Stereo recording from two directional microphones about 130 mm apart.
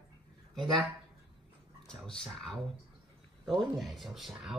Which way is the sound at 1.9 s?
5° left (ahead or behind).